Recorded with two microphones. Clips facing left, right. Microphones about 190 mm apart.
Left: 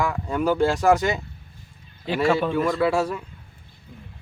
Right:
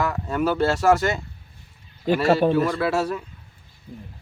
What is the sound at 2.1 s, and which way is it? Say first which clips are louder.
Speech: right 5 dB; 45° right (ahead or behind).